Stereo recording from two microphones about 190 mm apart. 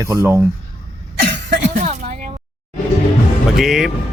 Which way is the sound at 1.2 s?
55° right (ahead or behind).